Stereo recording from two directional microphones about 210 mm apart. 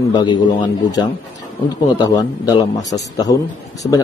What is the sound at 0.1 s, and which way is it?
A man's voice, 20° left (ahead or behind).